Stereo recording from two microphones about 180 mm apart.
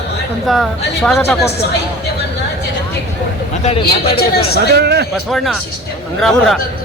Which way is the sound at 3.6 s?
35° left (ahead or behind).